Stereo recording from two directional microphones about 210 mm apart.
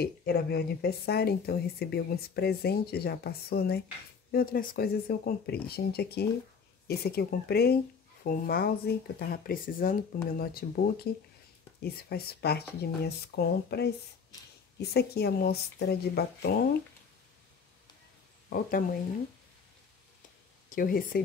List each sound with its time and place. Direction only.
0.0 s a woman's voice: 45° left (ahead or behind)
18.5 s speech: 40° left (ahead or behind)
20.7 s a woman's voice: 45° left (ahead or behind)